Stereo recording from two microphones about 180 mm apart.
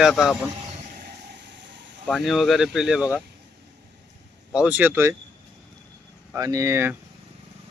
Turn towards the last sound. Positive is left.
turn(degrees=-15)  # may be behind; listen again after turning